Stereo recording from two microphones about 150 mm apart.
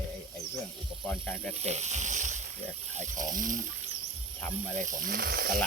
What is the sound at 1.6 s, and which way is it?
Speech, 45° right (ahead or behind).